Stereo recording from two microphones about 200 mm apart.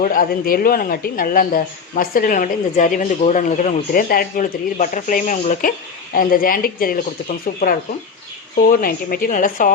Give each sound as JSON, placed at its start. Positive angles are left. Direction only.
{"t": 0.0, "sound": "a woman's voice", "side_deg": 45}
{"t": 8.7, "sound": "a woman's voice", "side_deg": 45}